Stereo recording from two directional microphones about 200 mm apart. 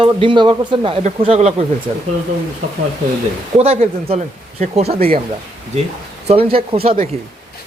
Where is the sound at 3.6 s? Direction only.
30° right (ahead or behind).